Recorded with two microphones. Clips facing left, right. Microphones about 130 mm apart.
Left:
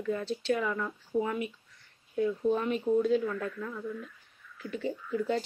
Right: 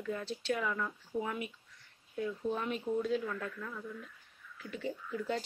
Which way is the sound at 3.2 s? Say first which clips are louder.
Left 6 dB; 15° left (ahead or behind).